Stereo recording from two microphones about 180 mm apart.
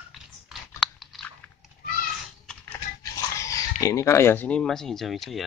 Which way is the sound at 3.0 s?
15° left (ahead or behind).